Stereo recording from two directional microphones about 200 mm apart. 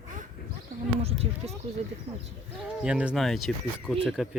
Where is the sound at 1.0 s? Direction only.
30° right (ahead or behind).